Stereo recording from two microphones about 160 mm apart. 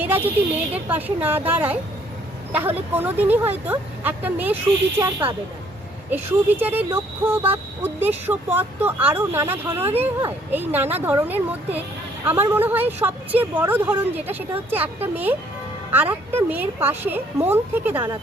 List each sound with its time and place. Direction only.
0.0 s a woman's voice: 10° right (ahead or behind)